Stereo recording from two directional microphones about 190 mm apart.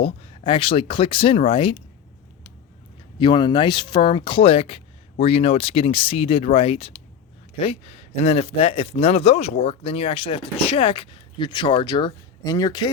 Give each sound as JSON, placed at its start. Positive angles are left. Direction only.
{"t": 0.0, "sound": "a man's voice", "side_deg": 30}
{"t": 3.2, "sound": "a man's voice", "side_deg": 25}